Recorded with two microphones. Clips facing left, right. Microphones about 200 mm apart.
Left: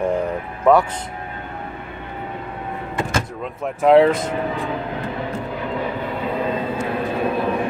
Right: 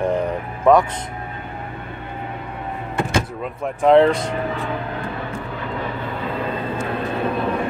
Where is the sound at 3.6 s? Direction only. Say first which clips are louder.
Even; 5° left (ahead or behind).